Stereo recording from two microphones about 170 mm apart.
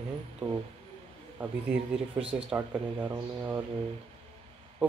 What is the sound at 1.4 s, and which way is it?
Speech, 10° right (ahead or behind).